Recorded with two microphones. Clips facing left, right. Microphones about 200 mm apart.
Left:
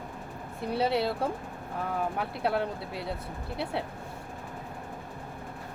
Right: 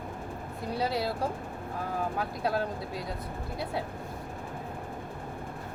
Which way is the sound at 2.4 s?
25° left (ahead or behind).